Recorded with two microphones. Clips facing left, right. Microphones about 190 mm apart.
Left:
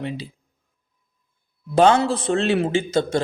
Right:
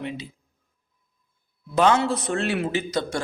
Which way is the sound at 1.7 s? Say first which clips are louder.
Left 4 dB; 30° left (ahead or behind).